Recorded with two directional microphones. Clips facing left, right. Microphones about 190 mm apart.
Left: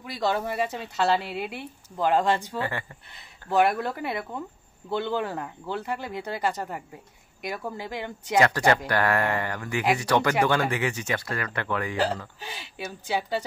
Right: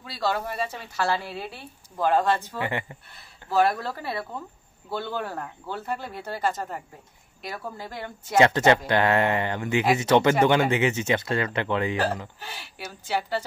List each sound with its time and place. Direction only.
0.0 s a woman's voice: 15° left (ahead or behind)
2.6 s speech: 20° right (ahead or behind)
3.5 s a woman's voice: 20° left (ahead or behind)
8.4 s speech: 25° right (ahead or behind)
12.4 s a woman's voice: 15° left (ahead or behind)